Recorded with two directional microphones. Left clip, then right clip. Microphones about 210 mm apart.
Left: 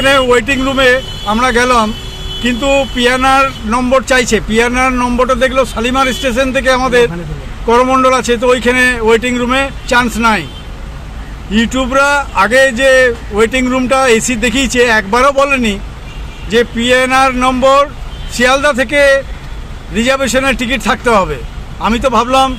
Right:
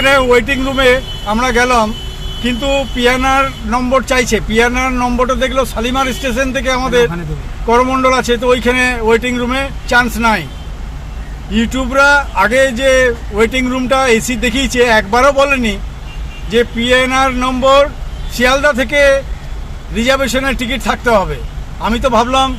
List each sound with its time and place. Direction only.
0.0 s speech: 10° left (ahead or behind)
11.5 s speech: 10° left (ahead or behind)